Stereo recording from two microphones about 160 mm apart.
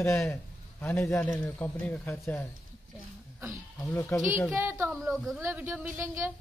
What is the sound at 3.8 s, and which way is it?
Speech, 20° left (ahead or behind).